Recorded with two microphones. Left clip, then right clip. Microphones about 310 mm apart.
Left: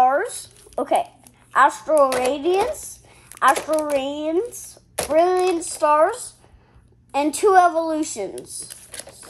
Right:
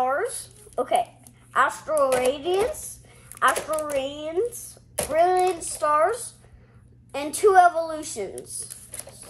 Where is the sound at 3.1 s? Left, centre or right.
Left.